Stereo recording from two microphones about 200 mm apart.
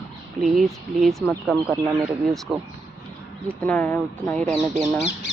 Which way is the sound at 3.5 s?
10° left (ahead or behind).